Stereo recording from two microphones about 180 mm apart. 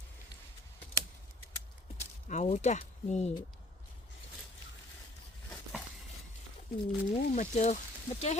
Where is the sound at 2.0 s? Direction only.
40° left (ahead or behind).